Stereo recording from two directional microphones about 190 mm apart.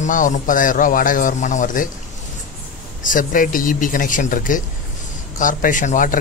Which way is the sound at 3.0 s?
45° left (ahead or behind).